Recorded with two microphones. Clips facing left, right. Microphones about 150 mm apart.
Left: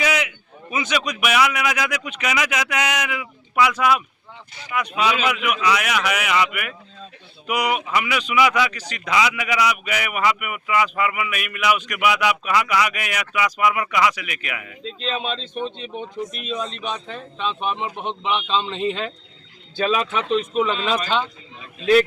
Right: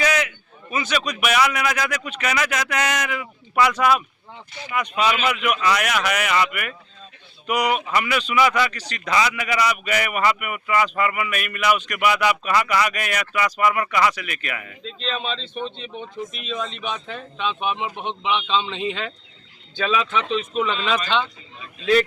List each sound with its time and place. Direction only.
0.0 s a man's voice: 10° left (ahead or behind)
17.1 s a man's voice: centre (ahead or behind)
19.7 s speech: 40° left (ahead or behind)
20.5 s a man's voice: 5° left (ahead or behind)